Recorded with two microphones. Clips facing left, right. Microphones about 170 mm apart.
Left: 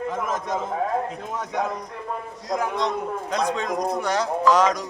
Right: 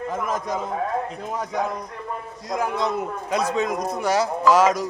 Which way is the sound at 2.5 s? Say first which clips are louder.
Right 1 dB; 5° right (ahead or behind).